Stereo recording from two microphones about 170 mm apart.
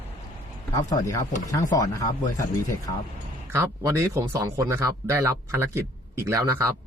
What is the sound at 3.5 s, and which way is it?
Speech, 15° right (ahead or behind).